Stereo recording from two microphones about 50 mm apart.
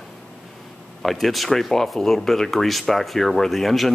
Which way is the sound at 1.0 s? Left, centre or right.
Centre.